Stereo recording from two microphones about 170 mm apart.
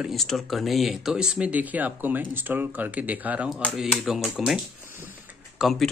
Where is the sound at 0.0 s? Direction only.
Centre (ahead or behind).